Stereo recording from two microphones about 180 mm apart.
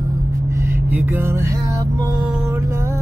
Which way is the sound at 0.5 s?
15° right (ahead or behind).